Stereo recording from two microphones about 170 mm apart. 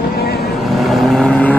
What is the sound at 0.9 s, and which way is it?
Vehicle, 5° left (ahead or behind).